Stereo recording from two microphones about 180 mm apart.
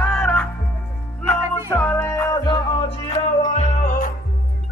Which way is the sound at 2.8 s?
30° left (ahead or behind).